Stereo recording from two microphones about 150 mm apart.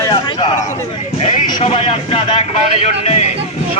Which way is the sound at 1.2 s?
55° left (ahead or behind).